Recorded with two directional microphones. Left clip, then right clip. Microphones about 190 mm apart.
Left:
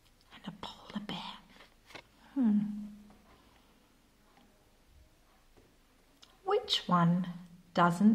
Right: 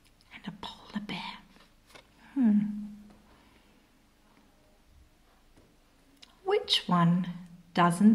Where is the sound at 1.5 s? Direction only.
20° left (ahead or behind).